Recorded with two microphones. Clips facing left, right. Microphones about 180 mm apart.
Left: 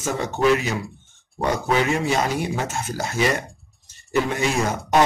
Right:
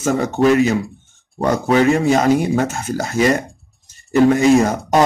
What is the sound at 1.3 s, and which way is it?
Speech, 45° right (ahead or behind).